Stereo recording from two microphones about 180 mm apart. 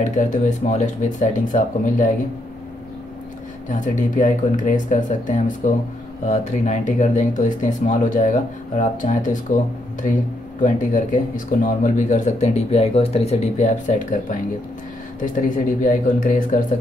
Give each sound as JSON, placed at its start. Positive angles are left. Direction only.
{"t": 0.0, "sound": "speech", "side_deg": 45}
{"t": 3.6, "sound": "speech", "side_deg": 45}
{"t": 10.6, "sound": "speech", "side_deg": 45}